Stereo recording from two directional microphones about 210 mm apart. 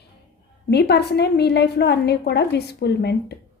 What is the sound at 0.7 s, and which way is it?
A woman's voice, 50° left (ahead or behind).